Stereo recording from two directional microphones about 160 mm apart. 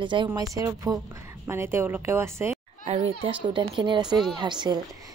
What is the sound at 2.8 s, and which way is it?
A child's voice, 40° right (ahead or behind).